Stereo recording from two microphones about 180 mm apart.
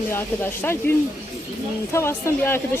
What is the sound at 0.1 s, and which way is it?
Speech, 15° left (ahead or behind).